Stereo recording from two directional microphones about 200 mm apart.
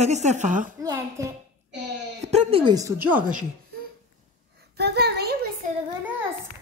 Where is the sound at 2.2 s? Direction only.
30° right (ahead or behind).